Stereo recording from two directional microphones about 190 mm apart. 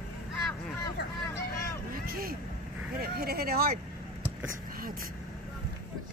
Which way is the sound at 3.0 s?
55° right (ahead or behind).